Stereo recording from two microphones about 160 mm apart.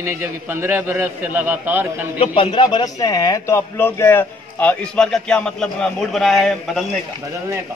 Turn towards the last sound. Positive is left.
turn(degrees=0)  # may be behind; listen again after turning